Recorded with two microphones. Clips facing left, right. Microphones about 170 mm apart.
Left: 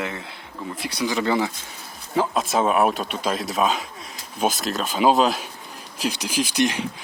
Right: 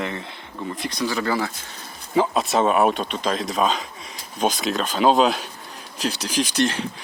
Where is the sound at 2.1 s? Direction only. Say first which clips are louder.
Right 2 dB; centre (ahead or behind).